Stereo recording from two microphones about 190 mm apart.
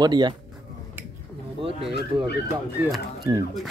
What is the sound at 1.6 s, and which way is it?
Speech, 30° right (ahead or behind).